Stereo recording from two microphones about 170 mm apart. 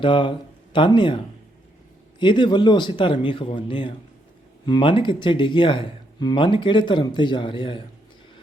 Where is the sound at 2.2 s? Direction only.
30° left (ahead or behind).